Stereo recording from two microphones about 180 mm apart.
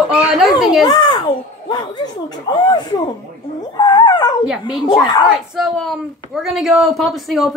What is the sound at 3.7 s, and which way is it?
Dog, 25° left (ahead or behind).